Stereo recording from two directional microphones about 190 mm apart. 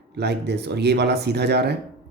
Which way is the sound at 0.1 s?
60° right (ahead or behind).